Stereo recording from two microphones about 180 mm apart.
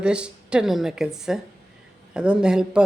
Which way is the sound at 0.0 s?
5° right (ahead or behind).